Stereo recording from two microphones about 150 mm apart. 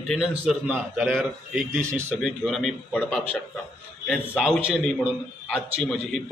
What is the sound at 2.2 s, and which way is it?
A man's voice, centre (ahead or behind).